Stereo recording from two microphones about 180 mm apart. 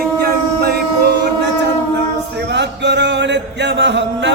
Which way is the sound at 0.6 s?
60° right (ahead or behind).